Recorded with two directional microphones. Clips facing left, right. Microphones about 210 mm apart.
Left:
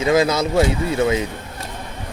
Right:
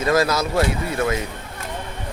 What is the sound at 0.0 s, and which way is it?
Speech, 15° left (ahead or behind).